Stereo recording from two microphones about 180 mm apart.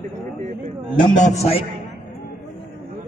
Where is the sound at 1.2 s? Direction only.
40° left (ahead or behind).